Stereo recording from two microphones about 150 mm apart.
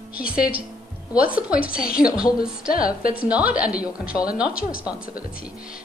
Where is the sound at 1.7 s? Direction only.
75° left (ahead or behind).